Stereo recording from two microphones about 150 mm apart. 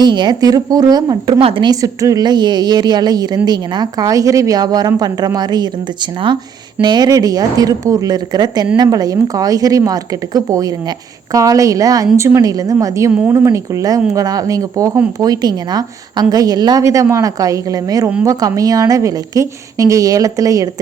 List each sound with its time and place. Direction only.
0.0 s a woman's voice: 30° right (ahead or behind)